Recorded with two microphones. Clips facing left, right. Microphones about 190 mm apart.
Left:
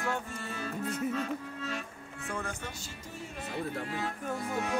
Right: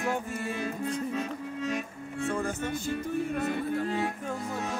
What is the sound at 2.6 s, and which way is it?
Music, 55° right (ahead or behind).